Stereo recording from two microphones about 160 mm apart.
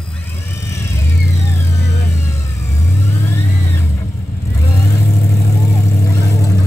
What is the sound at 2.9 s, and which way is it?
Vehicle, 15° left (ahead or behind).